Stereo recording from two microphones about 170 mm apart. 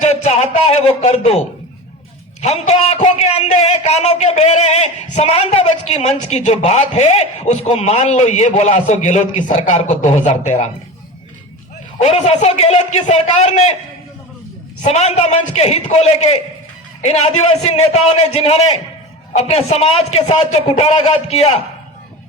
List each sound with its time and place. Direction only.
0.0 s a sound: 40° left (ahead or behind)
2.4 s a man's voice: 40° left (ahead or behind)
11.9 s a man's voice: 40° left (ahead or behind)
14.8 s a man's voice: 40° left (ahead or behind)